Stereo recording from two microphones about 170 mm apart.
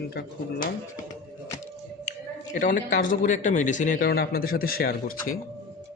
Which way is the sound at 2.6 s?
55° left (ahead or behind).